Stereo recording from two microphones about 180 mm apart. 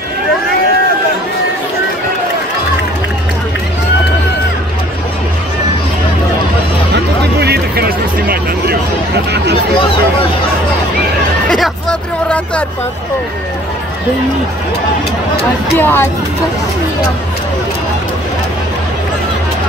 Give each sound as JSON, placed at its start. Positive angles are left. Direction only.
{"t": 7.3, "sound": "a sound", "side_deg": -60}
{"t": 11.4, "sound": "hubbub", "side_deg": 0}
{"t": 15.8, "sound": "speech", "side_deg": 10}